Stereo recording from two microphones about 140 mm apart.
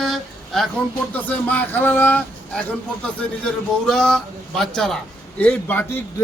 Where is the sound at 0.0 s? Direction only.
Centre (ahead or behind).